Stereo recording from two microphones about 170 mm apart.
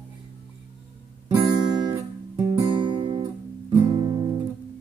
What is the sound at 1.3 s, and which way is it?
Guitar, 25° right (ahead or behind).